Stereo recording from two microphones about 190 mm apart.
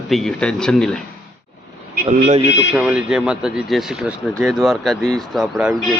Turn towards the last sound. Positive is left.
turn(degrees=0)  # may be behind; listen again after turning